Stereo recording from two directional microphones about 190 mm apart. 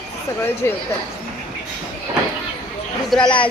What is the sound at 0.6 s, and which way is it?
Speech, 15° left (ahead or behind).